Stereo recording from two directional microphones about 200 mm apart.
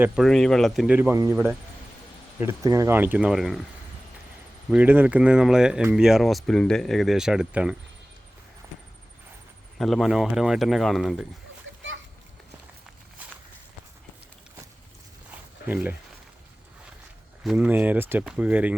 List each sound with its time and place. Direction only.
0.0 s speech: centre (ahead or behind)
4.7 s speech: 10° right (ahead or behind)
9.7 s speech: centre (ahead or behind)
11.7 s splash: 70° right (ahead or behind)
15.3 s a sound: 5° right (ahead or behind)
17.4 s speech: 5° right (ahead or behind)